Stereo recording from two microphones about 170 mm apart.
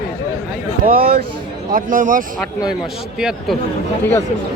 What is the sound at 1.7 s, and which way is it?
Speech, 50° right (ahead or behind).